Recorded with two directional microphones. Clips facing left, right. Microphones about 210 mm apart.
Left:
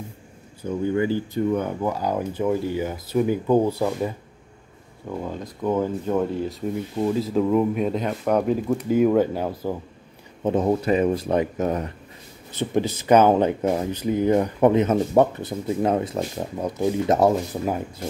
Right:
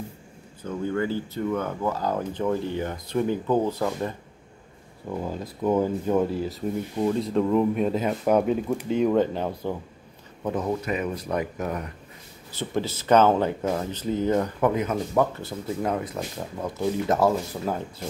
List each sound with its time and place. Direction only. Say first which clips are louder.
0.6 s speech: left 4 dB; 15° left (ahead or behind)
5.1 s speech: even; 5° right (ahead or behind)
10.4 s speech: left 6 dB; 30° left (ahead or behind)